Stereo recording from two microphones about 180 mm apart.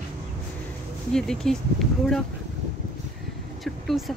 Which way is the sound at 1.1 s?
5° left (ahead or behind).